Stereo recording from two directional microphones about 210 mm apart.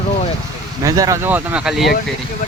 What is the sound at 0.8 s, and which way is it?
Speech, 15° right (ahead or behind).